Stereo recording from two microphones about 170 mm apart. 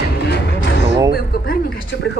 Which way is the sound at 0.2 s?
80° left.